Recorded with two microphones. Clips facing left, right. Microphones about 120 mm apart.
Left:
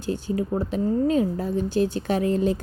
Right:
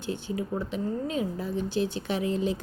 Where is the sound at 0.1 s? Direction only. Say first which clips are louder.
Left 6 dB; 40° left (ahead or behind).